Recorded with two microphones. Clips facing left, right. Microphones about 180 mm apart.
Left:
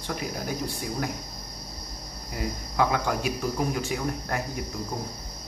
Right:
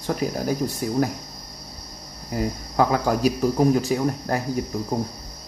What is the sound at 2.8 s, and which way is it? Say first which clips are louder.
Speech: right 6 dB; 40° right (ahead or behind).